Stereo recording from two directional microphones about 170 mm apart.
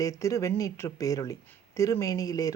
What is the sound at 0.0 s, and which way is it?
Speech, 20° left (ahead or behind).